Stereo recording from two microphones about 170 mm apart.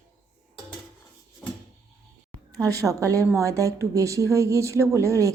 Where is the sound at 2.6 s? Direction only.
20° right (ahead or behind).